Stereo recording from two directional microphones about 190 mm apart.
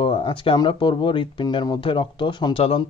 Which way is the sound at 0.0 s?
25° left (ahead or behind).